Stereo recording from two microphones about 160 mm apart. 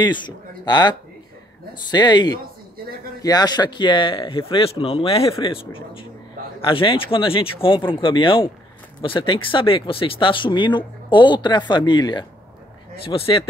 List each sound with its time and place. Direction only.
0.7 s speech: 25° left (ahead or behind)